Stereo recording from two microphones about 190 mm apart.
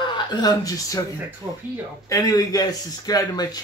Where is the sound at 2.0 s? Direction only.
20° left (ahead or behind).